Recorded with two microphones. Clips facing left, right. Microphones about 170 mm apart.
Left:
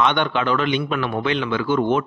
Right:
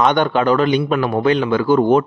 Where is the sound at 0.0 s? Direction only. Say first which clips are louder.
Right 5 dB; 40° right (ahead or behind).